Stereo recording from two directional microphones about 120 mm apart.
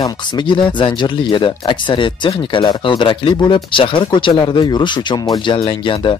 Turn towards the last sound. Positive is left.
turn(degrees=50)  # may be behind; listen again after turning